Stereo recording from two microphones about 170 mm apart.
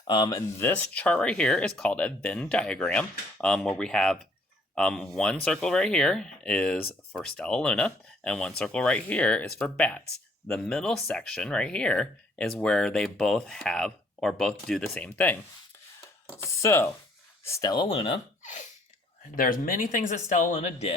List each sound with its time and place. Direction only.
0.1 s speech: 25° left (ahead or behind)
0.7 s speech: 10° left (ahead or behind)
16.4 s speech: 15° left (ahead or behind); by 18.2 s 35° left (ahead or behind)
19.4 s speech: 55° left (ahead or behind); by 20.9 s 40° left (ahead or behind)